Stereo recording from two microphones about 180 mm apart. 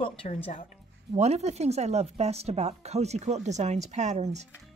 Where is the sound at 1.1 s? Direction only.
35° right (ahead or behind).